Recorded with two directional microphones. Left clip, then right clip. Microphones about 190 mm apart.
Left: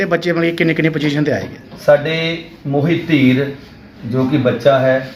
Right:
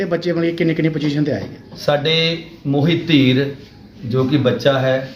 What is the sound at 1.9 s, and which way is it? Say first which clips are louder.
Speech: left 3 dB; 35° right (ahead or behind).